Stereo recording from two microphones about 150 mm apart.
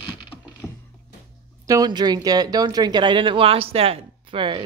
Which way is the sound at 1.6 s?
25° right (ahead or behind).